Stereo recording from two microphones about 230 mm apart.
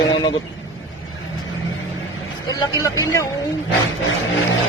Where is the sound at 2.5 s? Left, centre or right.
Centre.